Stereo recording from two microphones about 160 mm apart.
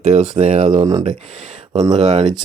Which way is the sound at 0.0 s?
45° right (ahead or behind).